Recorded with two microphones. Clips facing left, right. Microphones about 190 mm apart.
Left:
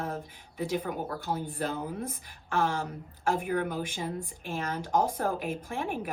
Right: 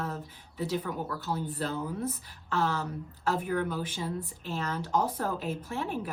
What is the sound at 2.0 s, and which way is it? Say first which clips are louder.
Speech: right 4 dB; 50° left (ahead or behind).